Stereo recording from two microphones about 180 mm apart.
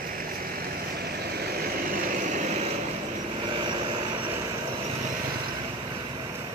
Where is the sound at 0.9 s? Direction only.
60° right (ahead or behind); by 2.7 s 40° right (ahead or behind).